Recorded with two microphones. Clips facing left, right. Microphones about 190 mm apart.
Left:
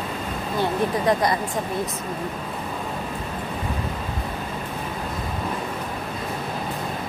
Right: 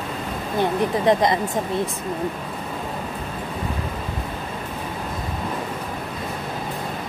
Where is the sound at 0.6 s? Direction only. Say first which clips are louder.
Right 2 dB; 20° right (ahead or behind).